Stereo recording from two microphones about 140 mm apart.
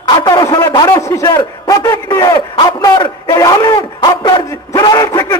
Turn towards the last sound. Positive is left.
turn(degrees=25)  # may be behind; listen again after turning